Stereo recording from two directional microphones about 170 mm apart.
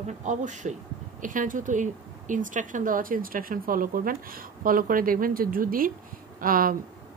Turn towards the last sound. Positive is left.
turn(degrees=-55)  # may be behind; listen again after turning